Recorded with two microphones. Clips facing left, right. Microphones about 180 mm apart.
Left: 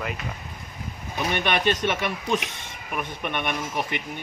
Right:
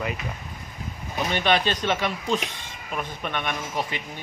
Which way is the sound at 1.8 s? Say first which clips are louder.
Even; 15° left (ahead or behind).